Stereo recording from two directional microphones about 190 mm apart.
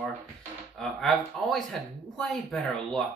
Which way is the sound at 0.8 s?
5° left (ahead or behind).